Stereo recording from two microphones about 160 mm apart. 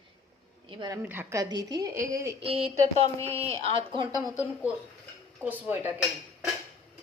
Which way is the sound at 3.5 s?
35° right (ahead or behind).